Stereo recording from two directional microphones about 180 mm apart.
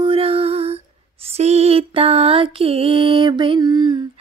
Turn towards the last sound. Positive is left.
turn(degrees=-25)  # may be behind; listen again after turning